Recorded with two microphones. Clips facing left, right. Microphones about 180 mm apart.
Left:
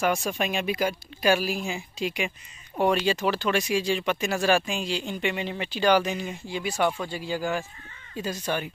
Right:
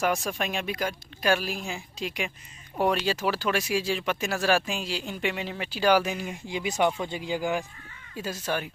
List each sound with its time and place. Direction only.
0.0 s speech: centre (ahead or behind)
6.4 s speech: 15° right (ahead or behind)
8.2 s speech: 5° right (ahead or behind)